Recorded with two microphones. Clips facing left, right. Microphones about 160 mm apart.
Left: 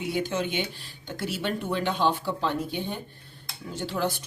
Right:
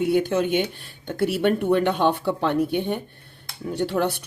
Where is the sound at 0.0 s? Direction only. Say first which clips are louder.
Right 8 dB; 55° right (ahead or behind).